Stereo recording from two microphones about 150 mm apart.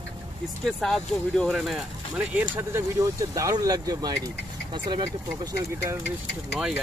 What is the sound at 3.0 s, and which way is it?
Speech, 20° right (ahead or behind).